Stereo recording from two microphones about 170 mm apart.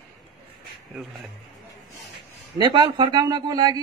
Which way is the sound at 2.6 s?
25° right (ahead or behind).